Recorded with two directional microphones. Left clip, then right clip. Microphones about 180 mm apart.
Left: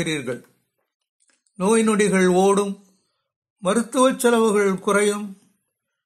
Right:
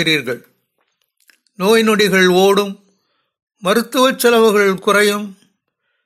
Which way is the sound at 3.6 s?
15° right (ahead or behind).